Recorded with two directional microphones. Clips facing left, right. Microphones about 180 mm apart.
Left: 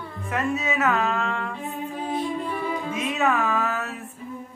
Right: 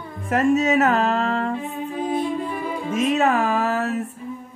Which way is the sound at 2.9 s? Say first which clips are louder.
Right 6 dB; 40° right (ahead or behind).